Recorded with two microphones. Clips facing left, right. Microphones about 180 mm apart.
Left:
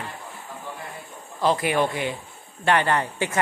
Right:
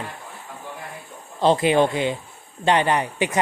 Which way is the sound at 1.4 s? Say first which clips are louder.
Right 4 dB; 25° right (ahead or behind).